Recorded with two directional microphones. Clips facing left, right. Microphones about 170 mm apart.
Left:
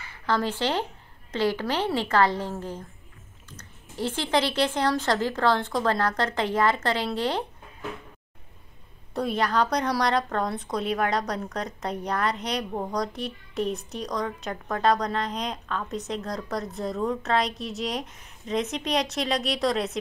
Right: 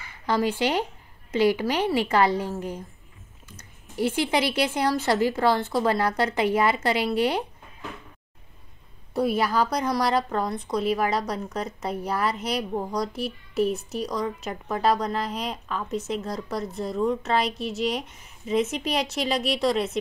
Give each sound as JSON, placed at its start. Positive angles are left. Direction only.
{"t": 0.3, "sound": "speech", "side_deg": -10}
{"t": 9.1, "sound": "a woman's voice", "side_deg": -5}